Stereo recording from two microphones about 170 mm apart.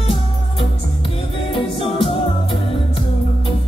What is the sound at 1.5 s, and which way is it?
Music, 30° left (ahead or behind).